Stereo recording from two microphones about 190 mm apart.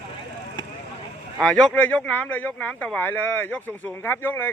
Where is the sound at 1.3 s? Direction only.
5° left (ahead or behind).